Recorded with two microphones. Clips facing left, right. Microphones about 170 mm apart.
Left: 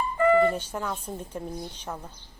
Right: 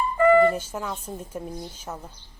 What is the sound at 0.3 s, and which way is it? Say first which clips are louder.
Music: right 3 dB; 45° right (ahead or behind).